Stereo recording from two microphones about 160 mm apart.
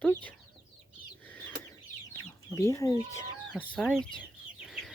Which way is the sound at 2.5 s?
20° left (ahead or behind).